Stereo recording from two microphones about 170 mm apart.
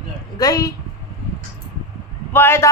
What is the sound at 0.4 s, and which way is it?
Speech, 20° left (ahead or behind).